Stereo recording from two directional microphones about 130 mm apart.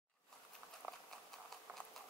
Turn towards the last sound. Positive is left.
turn(degrees=-15)  # may be behind; listen again after turning